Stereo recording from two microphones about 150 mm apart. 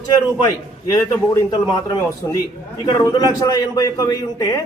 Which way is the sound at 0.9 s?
25° left (ahead or behind).